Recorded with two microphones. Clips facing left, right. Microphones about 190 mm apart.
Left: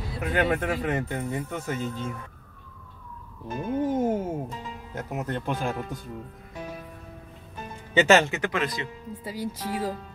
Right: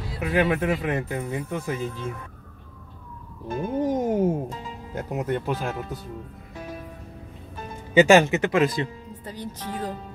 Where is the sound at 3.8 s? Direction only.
15° right (ahead or behind).